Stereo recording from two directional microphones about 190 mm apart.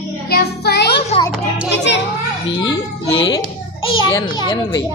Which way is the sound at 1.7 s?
65° left (ahead or behind).